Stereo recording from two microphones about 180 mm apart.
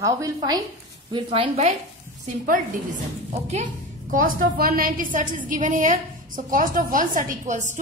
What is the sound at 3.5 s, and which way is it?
A woman's voice, 45° right (ahead or behind).